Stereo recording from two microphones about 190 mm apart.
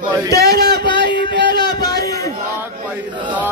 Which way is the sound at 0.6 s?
25° left (ahead or behind).